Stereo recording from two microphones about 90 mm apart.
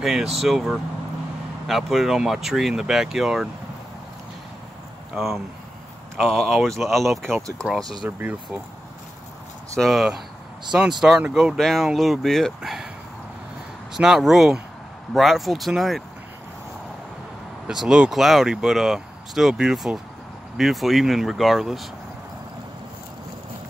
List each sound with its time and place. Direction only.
0.0 s speech: 5° right (ahead or behind)
5.1 s speech: centre (ahead or behind)
7.6 s speech: 15° right (ahead or behind)
9.8 s speech: centre (ahead or behind)
11.5 s speech: centre (ahead or behind)
13.9 s speech: 5° right (ahead or behind)
17.6 s speech: 5° right (ahead or behind)